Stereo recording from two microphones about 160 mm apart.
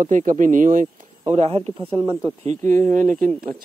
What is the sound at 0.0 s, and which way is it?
Speech, 50° right (ahead or behind).